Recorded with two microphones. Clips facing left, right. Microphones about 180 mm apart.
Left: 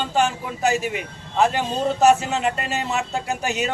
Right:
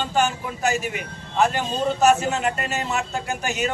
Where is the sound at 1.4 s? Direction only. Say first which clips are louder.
Left 1 dB; 30° left (ahead or behind).